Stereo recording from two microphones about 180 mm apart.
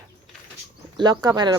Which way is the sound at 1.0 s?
25° right (ahead or behind).